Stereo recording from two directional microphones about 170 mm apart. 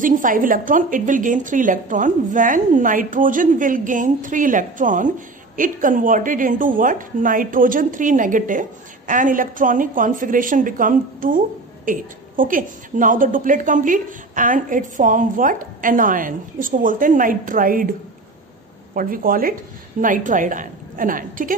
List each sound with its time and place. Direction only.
0.0 s speech: 50° right (ahead or behind)
18.9 s speech: 55° right (ahead or behind)